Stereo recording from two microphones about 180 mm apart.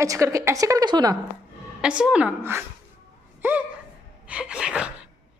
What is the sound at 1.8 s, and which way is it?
A woman's voice, 5° right (ahead or behind).